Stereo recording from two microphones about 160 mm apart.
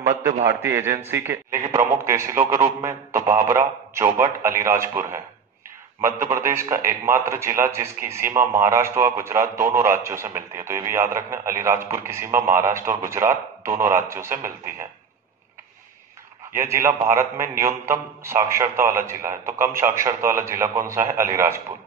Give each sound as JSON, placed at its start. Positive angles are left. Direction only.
{"t": 0.5, "sound": "a man's voice", "side_deg": -20}
{"t": 16.5, "sound": "a man's voice", "side_deg": -15}